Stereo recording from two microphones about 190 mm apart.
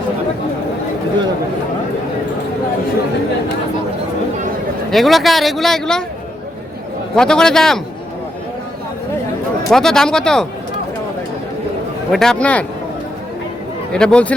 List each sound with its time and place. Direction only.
4.9 s speech: centre (ahead or behind)
7.2 s speech: 5° left (ahead or behind)
9.6 s speech: centre (ahead or behind)
12.1 s speech: 5° left (ahead or behind)
13.9 s speech: 5° left (ahead or behind)